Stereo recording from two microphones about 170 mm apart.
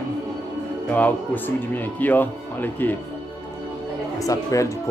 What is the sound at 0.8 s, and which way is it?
Speech, 10° left (ahead or behind).